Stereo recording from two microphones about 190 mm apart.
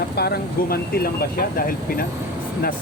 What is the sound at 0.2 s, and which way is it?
Speech, 55° left (ahead or behind).